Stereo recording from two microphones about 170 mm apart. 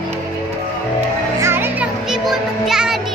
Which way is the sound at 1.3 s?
15° right (ahead or behind).